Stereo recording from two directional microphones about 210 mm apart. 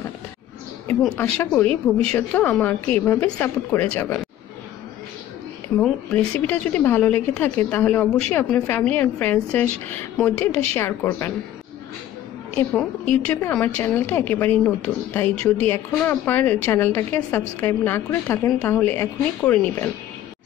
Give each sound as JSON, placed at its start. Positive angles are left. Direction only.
{"t": 1.0, "sound": "a woman's voice", "side_deg": 5}
{"t": 6.4, "sound": "a woman's voice", "side_deg": 5}
{"t": 12.5, "sound": "a woman's voice", "side_deg": 5}